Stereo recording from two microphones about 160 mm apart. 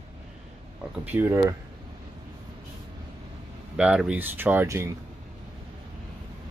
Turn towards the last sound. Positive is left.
turn(degrees=-15)  # may be behind; listen again after turning